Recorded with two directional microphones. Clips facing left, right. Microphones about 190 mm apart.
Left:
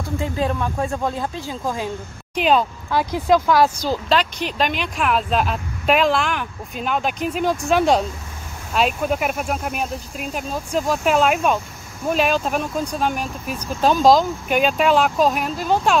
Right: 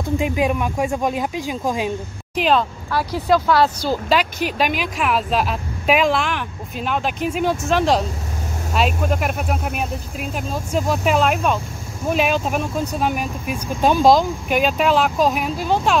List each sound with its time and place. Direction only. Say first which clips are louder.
0.2 s speech: even; 15° right (ahead or behind)
2.3 s speech: even; centre (ahead or behind)
2.9 s speech: left 1 dB; 15° left (ahead or behind)
3.9 s speech: right 1 dB; 5° right (ahead or behind)